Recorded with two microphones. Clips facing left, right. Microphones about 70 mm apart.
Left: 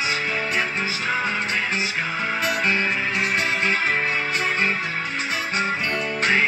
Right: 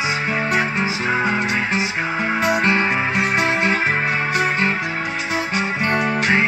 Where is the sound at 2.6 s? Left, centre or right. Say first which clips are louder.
Right 5 dB; right.